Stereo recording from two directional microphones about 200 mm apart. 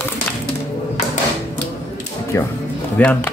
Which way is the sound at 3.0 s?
10° left (ahead or behind).